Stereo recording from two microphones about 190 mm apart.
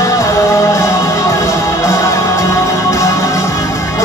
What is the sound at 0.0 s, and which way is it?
Music, 15° left (ahead or behind).